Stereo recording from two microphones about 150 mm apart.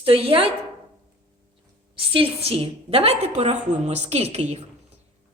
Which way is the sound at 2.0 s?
35° right (ahead or behind).